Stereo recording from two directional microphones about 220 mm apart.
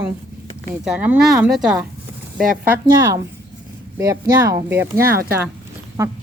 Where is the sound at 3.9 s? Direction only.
15° right (ahead or behind).